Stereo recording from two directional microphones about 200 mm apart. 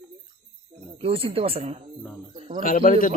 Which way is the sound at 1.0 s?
30° right (ahead or behind).